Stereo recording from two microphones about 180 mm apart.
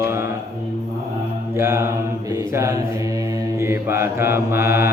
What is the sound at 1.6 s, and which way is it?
Mantra, 15° right (ahead or behind).